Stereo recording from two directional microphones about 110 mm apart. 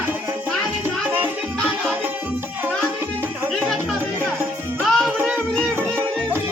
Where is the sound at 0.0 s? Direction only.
20° right (ahead or behind).